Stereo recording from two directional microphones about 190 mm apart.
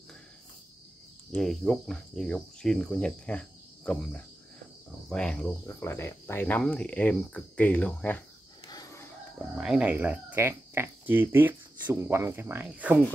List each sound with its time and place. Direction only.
1.3 s cricket: centre (ahead or behind)
5.7 s speech: 15° left (ahead or behind)
8.6 s chicken: 20° left (ahead or behind)
9.6 s speech: 5° right (ahead or behind)